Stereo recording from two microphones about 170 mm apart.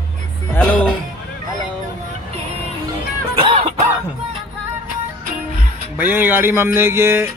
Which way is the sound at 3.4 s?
35° right (ahead or behind).